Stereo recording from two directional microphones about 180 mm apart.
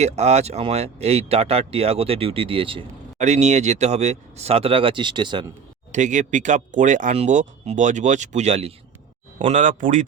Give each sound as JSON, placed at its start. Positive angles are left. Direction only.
{"t": 0.0, "sound": "speech", "side_deg": -40}
{"t": 5.9, "sound": "speech", "side_deg": -45}